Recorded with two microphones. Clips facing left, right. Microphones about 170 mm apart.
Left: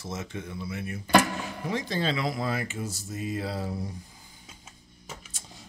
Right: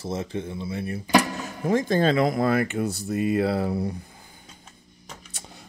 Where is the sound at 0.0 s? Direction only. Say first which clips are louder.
Right 7 dB; 30° right (ahead or behind).